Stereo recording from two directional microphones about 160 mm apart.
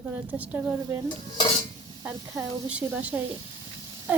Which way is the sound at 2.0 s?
10° right (ahead or behind).